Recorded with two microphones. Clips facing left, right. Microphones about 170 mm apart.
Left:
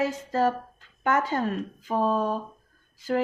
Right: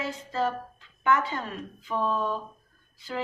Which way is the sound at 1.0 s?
45° left (ahead or behind).